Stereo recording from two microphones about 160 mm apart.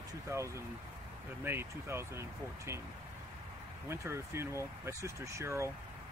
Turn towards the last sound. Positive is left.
turn(degrees=-15)  # may be behind; listen again after turning